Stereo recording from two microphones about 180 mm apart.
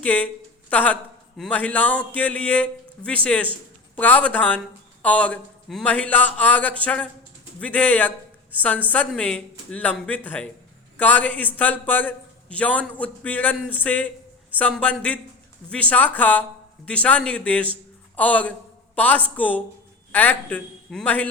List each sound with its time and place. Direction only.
0.0 s a man's voice: 10° left (ahead or behind)